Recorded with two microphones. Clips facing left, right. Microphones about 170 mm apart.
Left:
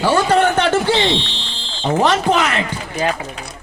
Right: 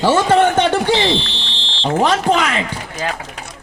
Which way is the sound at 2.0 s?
10° right (ahead or behind).